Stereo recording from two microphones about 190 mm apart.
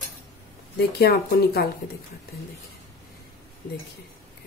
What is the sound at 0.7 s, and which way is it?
Speech, 55° left (ahead or behind).